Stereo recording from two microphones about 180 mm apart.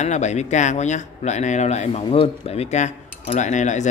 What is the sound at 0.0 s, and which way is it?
Speech, 40° left (ahead or behind).